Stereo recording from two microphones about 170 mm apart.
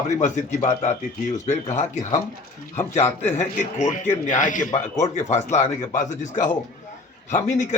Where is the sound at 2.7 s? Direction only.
15° left (ahead or behind).